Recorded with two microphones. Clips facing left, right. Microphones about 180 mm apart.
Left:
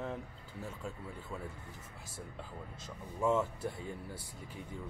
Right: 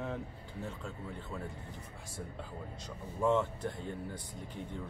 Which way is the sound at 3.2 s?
10° left (ahead or behind).